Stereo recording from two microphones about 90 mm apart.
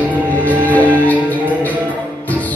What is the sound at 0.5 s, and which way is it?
Music, 20° left (ahead or behind).